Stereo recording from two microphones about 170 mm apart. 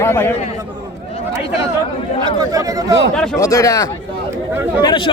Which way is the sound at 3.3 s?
20° left (ahead or behind).